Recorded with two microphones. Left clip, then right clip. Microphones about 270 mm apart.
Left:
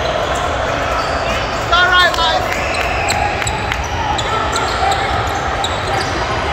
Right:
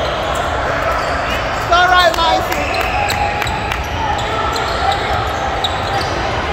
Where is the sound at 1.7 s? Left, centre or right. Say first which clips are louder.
Right 1 dB; right.